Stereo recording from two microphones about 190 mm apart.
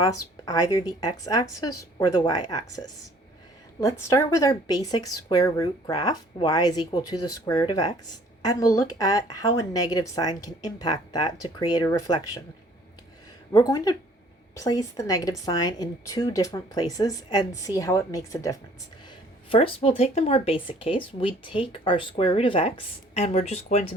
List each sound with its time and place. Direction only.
0.0 s speech: 20° left (ahead or behind)
13.5 s speech: 20° left (ahead or behind)
19.5 s speech: 30° left (ahead or behind)